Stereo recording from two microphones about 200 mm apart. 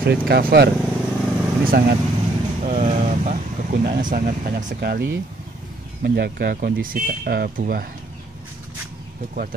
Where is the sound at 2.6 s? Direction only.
35° right (ahead or behind).